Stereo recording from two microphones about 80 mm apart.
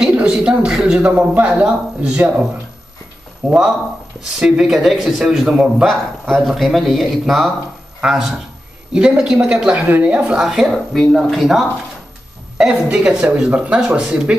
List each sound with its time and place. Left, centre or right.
0.1 s speech: centre
1.0 s a woman's voice: centre
3.4 s a woman's voice: centre
5.9 s a woman's voice: centre
12.8 s a woman's voice: centre